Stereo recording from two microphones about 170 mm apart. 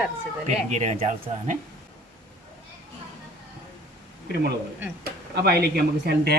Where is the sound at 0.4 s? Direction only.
45° right (ahead or behind).